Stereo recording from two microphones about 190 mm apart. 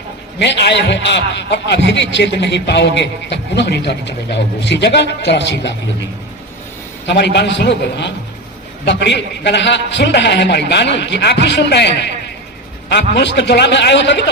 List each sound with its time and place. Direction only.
0.3 s a man's voice: 65° left (ahead or behind)
7.1 s a man's voice: 65° left (ahead or behind)